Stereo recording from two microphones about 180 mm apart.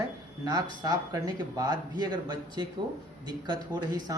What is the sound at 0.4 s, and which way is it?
Speech, 20° right (ahead or behind).